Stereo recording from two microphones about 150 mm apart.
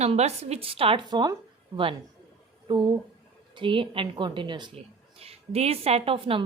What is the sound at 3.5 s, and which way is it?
A woman's voice, 35° right (ahead or behind).